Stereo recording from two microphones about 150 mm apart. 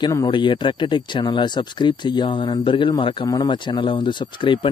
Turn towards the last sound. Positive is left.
turn(degrees=35)  # may be behind; listen again after turning